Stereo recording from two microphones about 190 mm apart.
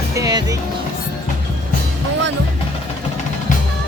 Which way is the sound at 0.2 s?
20° right (ahead or behind).